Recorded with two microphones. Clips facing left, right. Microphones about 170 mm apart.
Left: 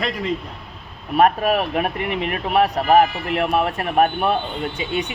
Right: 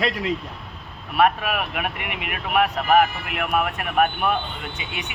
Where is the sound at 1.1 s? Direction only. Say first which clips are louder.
Left 4 dB; 40° left (ahead or behind).